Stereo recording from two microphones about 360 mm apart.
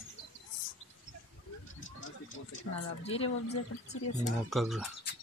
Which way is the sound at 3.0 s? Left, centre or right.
Centre.